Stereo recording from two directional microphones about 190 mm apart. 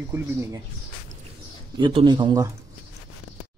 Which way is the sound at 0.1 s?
10° right (ahead or behind).